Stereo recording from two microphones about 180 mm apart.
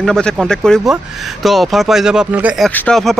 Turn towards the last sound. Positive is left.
turn(degrees=0)  # may be behind; listen again after turning